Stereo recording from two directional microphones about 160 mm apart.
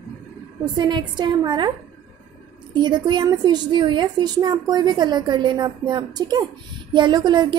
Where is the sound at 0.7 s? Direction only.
25° right (ahead or behind).